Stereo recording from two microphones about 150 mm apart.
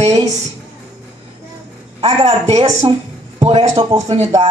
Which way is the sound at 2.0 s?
45° right (ahead or behind).